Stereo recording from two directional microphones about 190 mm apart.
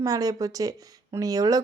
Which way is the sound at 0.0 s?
20° right (ahead or behind).